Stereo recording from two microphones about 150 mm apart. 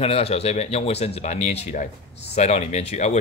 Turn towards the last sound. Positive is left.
turn(degrees=45)  # may be behind; listen again after turning